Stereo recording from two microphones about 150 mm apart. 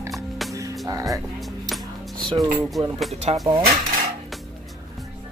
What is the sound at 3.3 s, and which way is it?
Speech, 45° right (ahead or behind).